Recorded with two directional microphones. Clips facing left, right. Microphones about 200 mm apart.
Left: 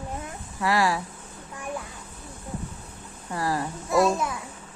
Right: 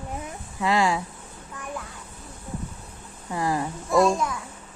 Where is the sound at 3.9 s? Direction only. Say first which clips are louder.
Right 2 dB; 5° left (ahead or behind).